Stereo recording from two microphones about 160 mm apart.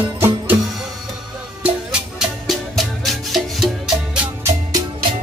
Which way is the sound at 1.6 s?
5° right (ahead or behind).